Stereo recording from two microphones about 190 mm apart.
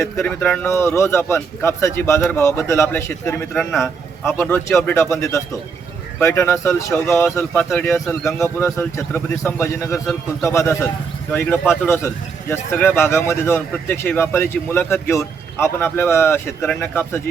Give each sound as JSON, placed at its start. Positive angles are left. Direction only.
{"t": 0.0, "sound": "speech", "side_deg": 10}